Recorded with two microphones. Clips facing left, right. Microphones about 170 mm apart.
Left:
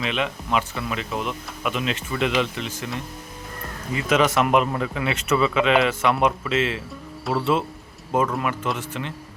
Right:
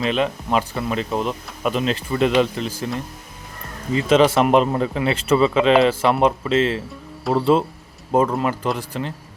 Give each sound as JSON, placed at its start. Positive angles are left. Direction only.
{"t": 0.0, "sound": "speech", "side_deg": -35}
{"t": 3.9, "sound": "speech", "side_deg": -30}